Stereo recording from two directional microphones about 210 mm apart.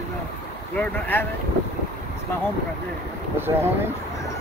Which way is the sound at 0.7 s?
10° left (ahead or behind).